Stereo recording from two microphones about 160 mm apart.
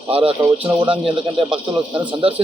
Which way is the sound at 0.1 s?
35° right (ahead or behind).